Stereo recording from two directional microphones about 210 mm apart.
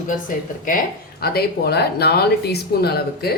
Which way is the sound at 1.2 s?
50° left (ahead or behind).